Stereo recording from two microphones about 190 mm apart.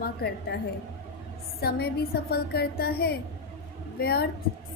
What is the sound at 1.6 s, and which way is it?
A woman's voice, 55° left (ahead or behind).